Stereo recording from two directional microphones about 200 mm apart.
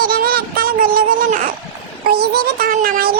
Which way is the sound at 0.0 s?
45° right (ahead or behind).